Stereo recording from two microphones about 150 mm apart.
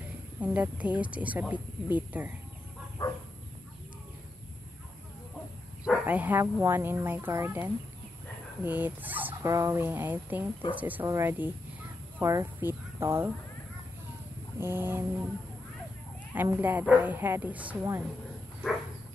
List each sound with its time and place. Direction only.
0.4 s fowl: 10° right (ahead or behind)
3.0 s a sound: 25° left (ahead or behind)
5.9 s fowl: 10° right (ahead or behind)
12.2 s speech: 20° right (ahead or behind)
14.6 s fowl: 15° right (ahead or behind)
16.3 s fowl: 15° right (ahead or behind)